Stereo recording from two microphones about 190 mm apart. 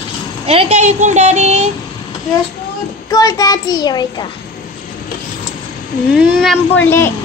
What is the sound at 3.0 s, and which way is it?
A child's voice, 20° left (ahead or behind).